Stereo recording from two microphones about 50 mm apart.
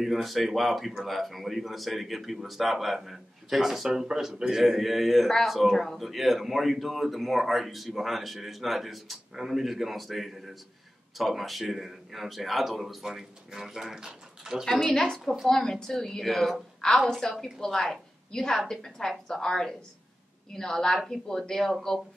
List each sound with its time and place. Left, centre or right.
0.0 s a man's voice: centre
14.6 s a woman's voice: centre